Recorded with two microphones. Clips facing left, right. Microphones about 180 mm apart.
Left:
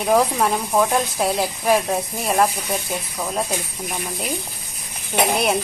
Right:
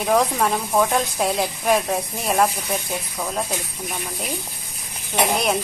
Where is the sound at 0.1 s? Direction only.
5° left (ahead or behind).